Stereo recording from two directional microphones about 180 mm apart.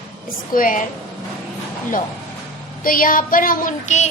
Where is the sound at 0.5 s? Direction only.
50° left (ahead or behind).